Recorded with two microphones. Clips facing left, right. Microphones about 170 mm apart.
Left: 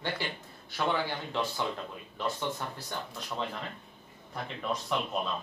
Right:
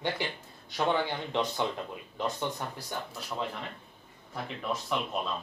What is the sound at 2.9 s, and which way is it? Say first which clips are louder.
Speech: right 1 dB; 5° right (ahead or behind).